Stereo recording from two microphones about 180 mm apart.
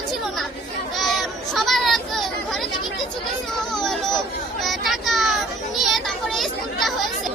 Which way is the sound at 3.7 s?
Centre (ahead or behind).